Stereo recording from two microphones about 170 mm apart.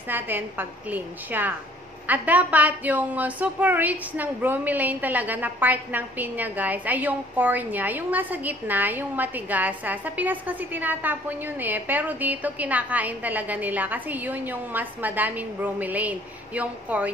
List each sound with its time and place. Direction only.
0.1 s a woman's voice: 10° right (ahead or behind)